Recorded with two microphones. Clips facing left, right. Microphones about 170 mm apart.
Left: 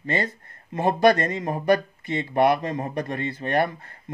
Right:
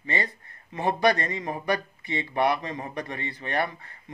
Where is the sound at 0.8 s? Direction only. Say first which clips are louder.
Left 5 dB; 45° left (ahead or behind).